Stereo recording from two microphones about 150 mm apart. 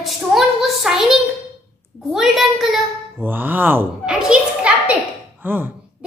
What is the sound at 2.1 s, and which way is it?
Speech, centre (ahead or behind).